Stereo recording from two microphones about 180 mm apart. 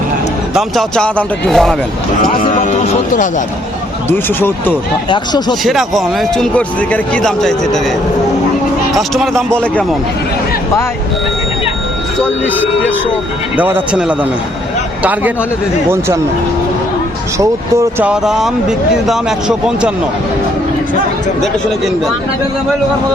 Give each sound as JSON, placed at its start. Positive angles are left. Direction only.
{"t": 0.5, "sound": "speech", "side_deg": 5}
{"t": 2.5, "sound": "speech", "side_deg": 40}
{"t": 4.1, "sound": "speech", "side_deg": 10}
{"t": 5.0, "sound": "speech", "side_deg": 25}
{"t": 5.6, "sound": "speech", "side_deg": 0}
{"t": 9.0, "sound": "speech", "side_deg": 0}
{"t": 13.6, "sound": "speech", "side_deg": -10}
{"t": 17.3, "sound": "speech", "side_deg": -15}
{"t": 18.1, "sound": "speech", "side_deg": -5}